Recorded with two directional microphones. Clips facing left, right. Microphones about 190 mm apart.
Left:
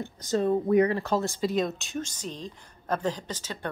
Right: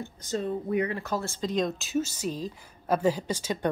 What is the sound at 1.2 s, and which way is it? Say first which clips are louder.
Speech: left 4 dB; 15° left (ahead or behind).